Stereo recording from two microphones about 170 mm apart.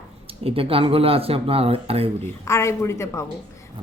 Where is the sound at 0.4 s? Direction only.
35° right (ahead or behind).